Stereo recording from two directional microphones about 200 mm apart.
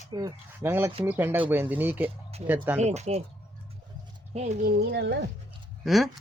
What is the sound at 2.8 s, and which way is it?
Speech, 35° right (ahead or behind).